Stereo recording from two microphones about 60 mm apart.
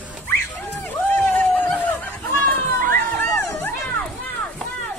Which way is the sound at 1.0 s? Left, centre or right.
Left.